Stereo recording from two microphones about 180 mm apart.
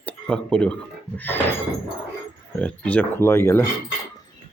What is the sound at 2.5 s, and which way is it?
Speech, 5° left (ahead or behind).